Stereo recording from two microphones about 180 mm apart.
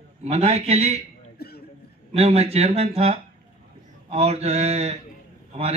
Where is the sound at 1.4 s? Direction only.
60° left (ahead or behind).